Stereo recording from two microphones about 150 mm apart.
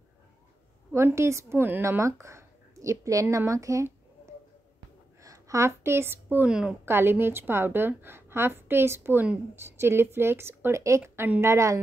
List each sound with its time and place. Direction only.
0.9 s speech: 20° right (ahead or behind)
5.2 s a sound: 20° right (ahead or behind)
6.3 s a woman's voice: 5° right (ahead or behind)